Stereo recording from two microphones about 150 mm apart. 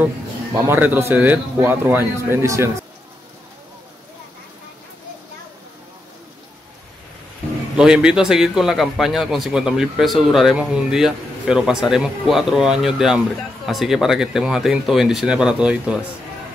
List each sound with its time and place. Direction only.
0.6 s a man's voice: 15° right (ahead or behind)
7.7 s a man's voice: 5° right (ahead or behind)